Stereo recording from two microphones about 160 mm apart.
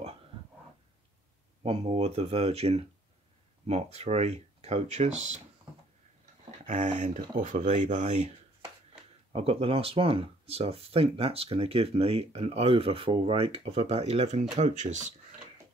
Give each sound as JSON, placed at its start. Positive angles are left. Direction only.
{"t": 1.6, "sound": "speech", "side_deg": -40}
{"t": 6.7, "sound": "speech", "side_deg": -50}
{"t": 9.3, "sound": "speech", "side_deg": -35}